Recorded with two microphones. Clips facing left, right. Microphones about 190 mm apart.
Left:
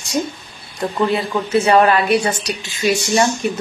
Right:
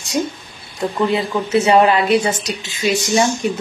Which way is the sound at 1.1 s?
20° right (ahead or behind).